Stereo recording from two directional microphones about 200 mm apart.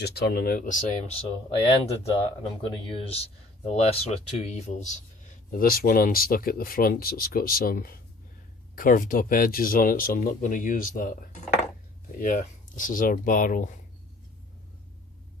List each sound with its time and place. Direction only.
0.0 s speech: 50° left (ahead or behind); by 4.9 s 35° left (ahead or behind)
5.5 s speech: 45° left (ahead or behind)